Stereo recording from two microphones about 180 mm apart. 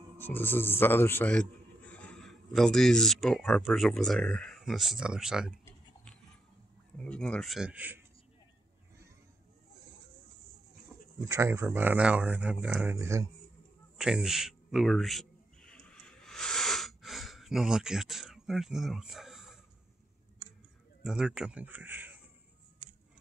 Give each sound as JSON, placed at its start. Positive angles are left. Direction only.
{"t": 0.2, "sound": "a man's voice", "side_deg": 10}
{"t": 7.0, "sound": "speech", "side_deg": 5}
{"t": 10.9, "sound": "a sound", "side_deg": 0}
{"t": 11.2, "sound": "speech", "side_deg": -15}
{"t": 12.9, "sound": "speech", "side_deg": -15}
{"t": 13.9, "sound": "a sound", "side_deg": -5}
{"t": 21.0, "sound": "speech", "side_deg": -5}